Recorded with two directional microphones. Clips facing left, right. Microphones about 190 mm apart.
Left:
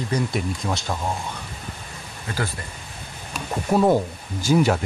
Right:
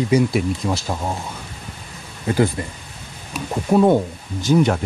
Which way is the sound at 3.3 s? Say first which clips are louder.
Right 4 dB; centre (ahead or behind).